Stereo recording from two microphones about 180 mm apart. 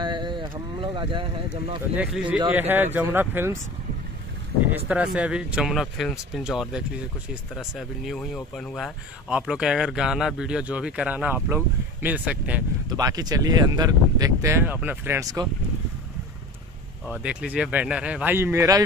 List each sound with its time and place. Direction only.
0.0 s speech: 25° right (ahead or behind)
2.0 s speech: 5° right (ahead or behind)
4.8 s speech: 5° right (ahead or behind)
12.9 s speech: 20° right (ahead or behind)
17.1 s speech: 5° right (ahead or behind)